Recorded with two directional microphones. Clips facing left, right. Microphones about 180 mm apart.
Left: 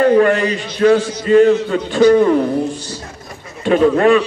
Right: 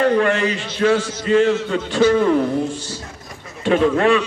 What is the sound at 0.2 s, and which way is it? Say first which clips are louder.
Speech: left 5 dB; 40° left (ahead or behind).